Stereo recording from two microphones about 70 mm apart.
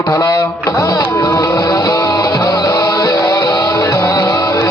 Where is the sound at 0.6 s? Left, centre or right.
Left.